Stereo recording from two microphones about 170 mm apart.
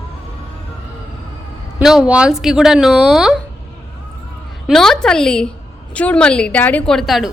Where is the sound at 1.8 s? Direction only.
5° right (ahead or behind).